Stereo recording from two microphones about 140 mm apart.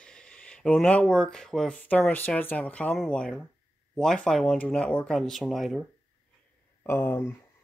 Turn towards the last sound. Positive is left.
turn(degrees=15)  # may be behind; listen again after turning